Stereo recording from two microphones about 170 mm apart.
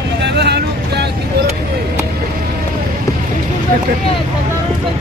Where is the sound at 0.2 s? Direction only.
75° right (ahead or behind).